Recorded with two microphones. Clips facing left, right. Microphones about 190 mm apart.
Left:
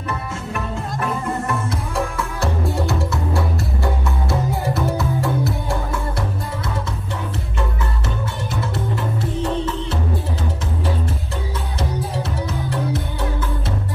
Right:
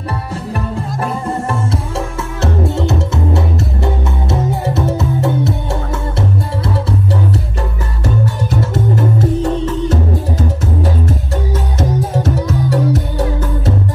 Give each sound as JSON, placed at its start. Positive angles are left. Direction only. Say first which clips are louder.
{"t": 0.1, "sound": "music", "louder": "right 4 dB", "side_deg": -35}
{"t": 8.0, "sound": "music", "louder": "right 8 dB", "side_deg": -40}
{"t": 12.1, "sound": "music", "louder": "right 8 dB", "side_deg": -45}